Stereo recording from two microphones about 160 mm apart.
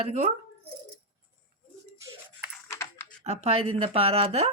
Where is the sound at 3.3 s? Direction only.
40° right (ahead or behind).